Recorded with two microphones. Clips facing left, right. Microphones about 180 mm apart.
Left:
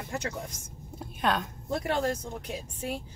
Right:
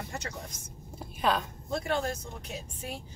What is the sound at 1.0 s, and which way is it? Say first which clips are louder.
Speech: even; centre (ahead or behind).